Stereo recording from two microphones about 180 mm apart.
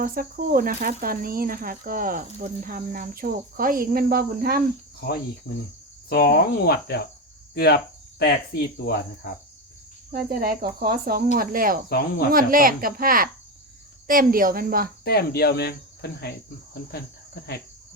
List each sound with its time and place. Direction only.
0.0 s speech: 50° right (ahead or behind)
4.9 s cricket: 60° left (ahead or behind)
10.1 s speech: 55° right (ahead or behind)
11.9 s cricket: 55° left (ahead or behind)
12.3 s speech: 50° right (ahead or behind)
15.0 s cricket: 60° left (ahead or behind)